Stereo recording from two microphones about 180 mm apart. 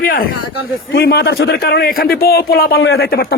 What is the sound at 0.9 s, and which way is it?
Speech, 65° left (ahead or behind).